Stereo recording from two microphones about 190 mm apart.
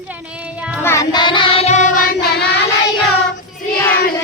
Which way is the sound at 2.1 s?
55° left (ahead or behind).